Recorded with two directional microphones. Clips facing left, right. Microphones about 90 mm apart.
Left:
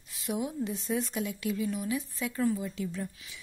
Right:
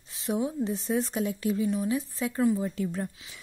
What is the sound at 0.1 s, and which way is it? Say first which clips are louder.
A woman's voice: right 4 dB; 30° right (ahead or behind).